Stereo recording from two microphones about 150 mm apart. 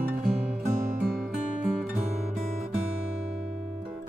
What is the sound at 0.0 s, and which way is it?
Music, 60° right (ahead or behind).